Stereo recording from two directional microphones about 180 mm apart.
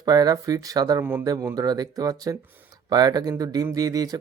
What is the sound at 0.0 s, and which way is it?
Speech, 20° right (ahead or behind).